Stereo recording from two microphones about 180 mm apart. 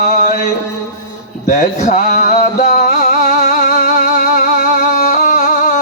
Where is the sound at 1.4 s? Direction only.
45° left (ahead or behind).